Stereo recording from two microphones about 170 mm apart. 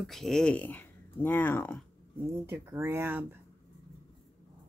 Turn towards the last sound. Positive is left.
turn(degrees=-10)  # may be behind; listen again after turning